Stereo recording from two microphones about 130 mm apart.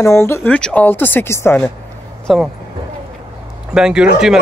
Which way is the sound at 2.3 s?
Centre (ahead or behind).